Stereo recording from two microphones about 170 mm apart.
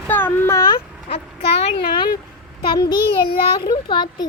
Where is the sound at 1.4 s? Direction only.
75° left (ahead or behind).